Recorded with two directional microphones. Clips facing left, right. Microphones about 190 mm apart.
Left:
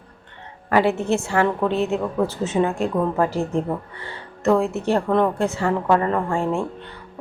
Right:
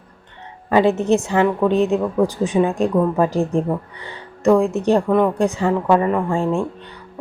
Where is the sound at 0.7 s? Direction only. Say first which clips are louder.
Right 4 dB; 20° right (ahead or behind).